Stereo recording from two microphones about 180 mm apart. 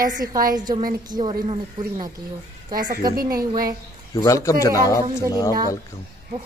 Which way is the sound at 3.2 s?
55° right (ahead or behind).